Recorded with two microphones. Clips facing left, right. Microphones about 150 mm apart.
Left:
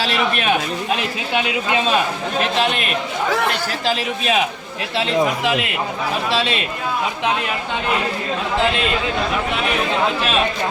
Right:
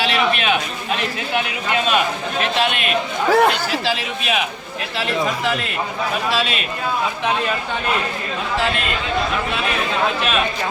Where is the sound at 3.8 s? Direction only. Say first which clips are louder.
Left 2 dB; 40° left (ahead or behind).